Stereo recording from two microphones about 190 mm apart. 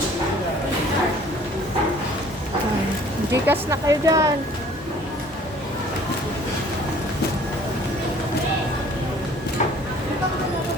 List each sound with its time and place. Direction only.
3.3 s a woman's voice: 15° right (ahead or behind)